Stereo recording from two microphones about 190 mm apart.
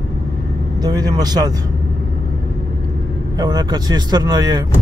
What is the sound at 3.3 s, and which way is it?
Speech, 20° right (ahead or behind).